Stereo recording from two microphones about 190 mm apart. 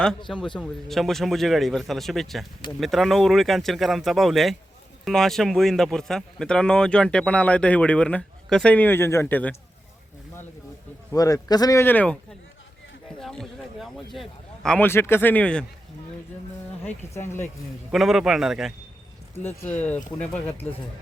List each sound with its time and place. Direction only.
0.3 s speech: 5° left (ahead or behind)
11.1 s speech: 20° left (ahead or behind)
13.1 s speech: 5° left (ahead or behind)
17.2 s speech: 15° left (ahead or behind)
17.9 s speech: centre (ahead or behind)
19.4 s speech: 10° left (ahead or behind)